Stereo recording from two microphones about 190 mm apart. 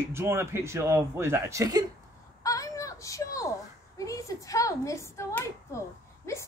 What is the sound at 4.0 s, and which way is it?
A woman's voice, 15° left (ahead or behind).